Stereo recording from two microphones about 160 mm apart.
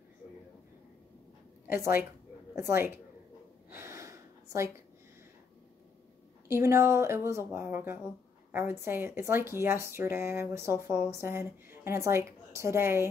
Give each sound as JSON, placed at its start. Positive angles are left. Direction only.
{"t": 1.7, "sound": "speech", "side_deg": -15}
{"t": 3.7, "sound": "gasp", "side_deg": -15}
{"t": 6.5, "sound": "speech", "side_deg": -15}